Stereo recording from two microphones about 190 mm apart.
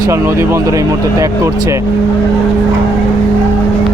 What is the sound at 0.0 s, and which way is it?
Speech, 15° right (ahead or behind).